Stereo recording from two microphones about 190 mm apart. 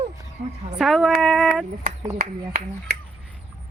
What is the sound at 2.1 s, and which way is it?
Speech, 45° right (ahead or behind).